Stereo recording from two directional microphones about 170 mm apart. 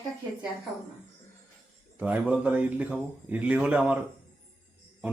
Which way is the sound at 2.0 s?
10° right (ahead or behind).